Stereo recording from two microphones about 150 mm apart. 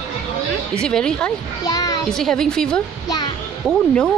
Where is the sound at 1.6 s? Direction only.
25° left (ahead or behind).